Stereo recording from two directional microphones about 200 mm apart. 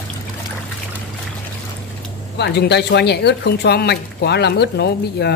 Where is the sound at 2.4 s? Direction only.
55° left (ahead or behind).